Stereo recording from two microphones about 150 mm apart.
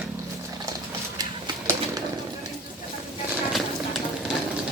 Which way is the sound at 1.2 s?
25° right (ahead or behind).